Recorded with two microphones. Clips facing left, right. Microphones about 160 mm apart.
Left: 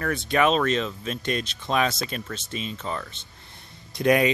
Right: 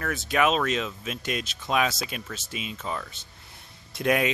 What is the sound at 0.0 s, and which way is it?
Speech, 5° right (ahead or behind).